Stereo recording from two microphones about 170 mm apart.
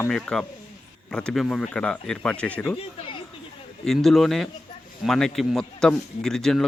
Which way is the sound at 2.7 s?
30° left (ahead or behind).